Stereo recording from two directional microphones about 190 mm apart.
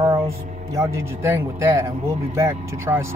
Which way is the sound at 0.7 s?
15° right (ahead or behind).